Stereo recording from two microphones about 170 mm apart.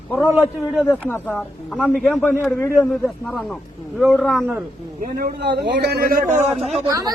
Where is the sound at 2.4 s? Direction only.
15° left (ahead or behind).